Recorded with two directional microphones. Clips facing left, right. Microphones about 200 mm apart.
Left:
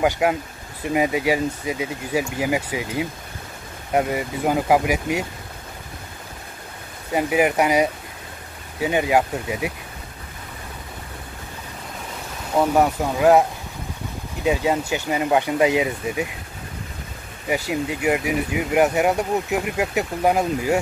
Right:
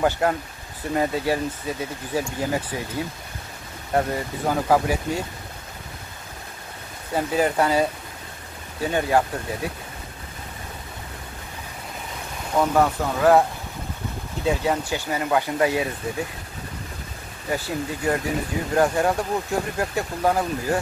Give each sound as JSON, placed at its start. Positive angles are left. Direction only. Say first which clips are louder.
{"t": 0.0, "sound": "speech", "louder": "left 2 dB", "side_deg": 10}
{"t": 7.2, "sound": "speech", "louder": "left 2 dB", "side_deg": 10}
{"t": 12.5, "sound": "speech", "louder": "left 2 dB", "side_deg": 15}
{"t": 17.5, "sound": "speech", "louder": "left 3 dB", "side_deg": 15}